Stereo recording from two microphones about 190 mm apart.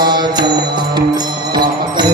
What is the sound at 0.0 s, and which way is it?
Music, 20° right (ahead or behind).